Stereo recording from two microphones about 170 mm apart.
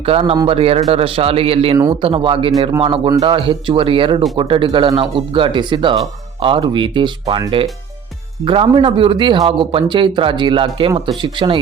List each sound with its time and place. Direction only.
0.0 s a man's voice: 35° right (ahead or behind)
8.4 s speech: 30° right (ahead or behind)